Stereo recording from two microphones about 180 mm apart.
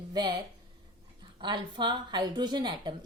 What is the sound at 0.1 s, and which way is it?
A woman's voice, 25° right (ahead or behind).